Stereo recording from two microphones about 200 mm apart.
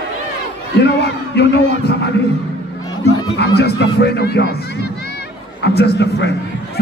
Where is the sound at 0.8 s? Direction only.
55° left (ahead or behind).